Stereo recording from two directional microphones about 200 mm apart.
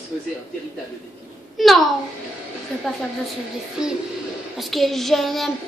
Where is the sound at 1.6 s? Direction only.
Centre (ahead or behind).